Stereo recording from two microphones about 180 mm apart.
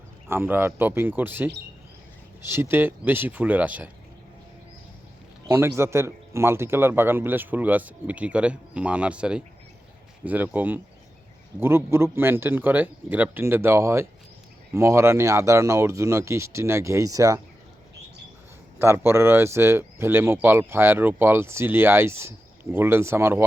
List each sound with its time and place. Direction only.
0.3 s a man's voice: 10° right (ahead or behind)
5.5 s a man's voice: 15° right (ahead or behind)
18.8 s a man's voice: 15° right (ahead or behind)